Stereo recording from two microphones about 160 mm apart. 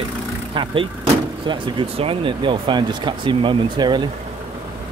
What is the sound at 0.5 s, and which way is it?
Speech, 30° right (ahead or behind).